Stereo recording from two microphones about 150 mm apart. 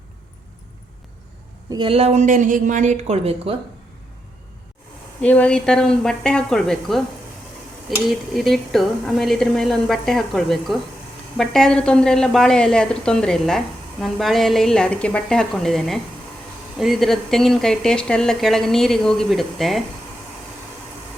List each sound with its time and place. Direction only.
1.7 s speech: 35° right (ahead or behind)
5.2 s speech: 10° left (ahead or behind)
8.0 s speech: centre (ahead or behind)